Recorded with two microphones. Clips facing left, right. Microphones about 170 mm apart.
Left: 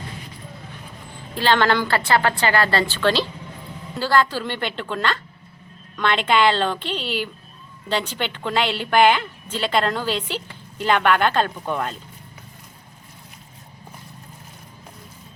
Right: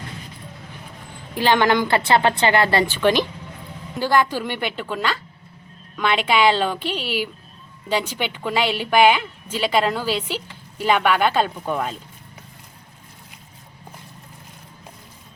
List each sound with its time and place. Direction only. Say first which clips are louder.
1.4 s speech: right 1 dB; 15° right (ahead or behind)